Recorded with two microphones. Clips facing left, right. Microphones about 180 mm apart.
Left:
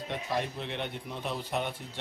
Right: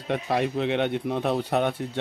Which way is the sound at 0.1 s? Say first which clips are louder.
Right 9 dB; 90° right.